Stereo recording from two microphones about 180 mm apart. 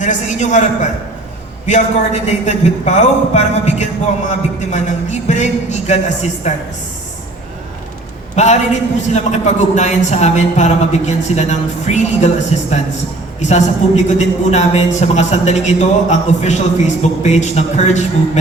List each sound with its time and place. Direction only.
0.0 s a man's voice: 40° left (ahead or behind)
8.4 s a man's voice: 40° left (ahead or behind)